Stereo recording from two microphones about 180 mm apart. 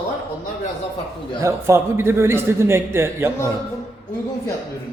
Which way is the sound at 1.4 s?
15° right (ahead or behind).